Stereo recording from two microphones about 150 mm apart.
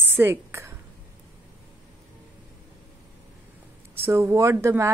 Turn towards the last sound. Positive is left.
turn(degrees=-15)  # may be behind; listen again after turning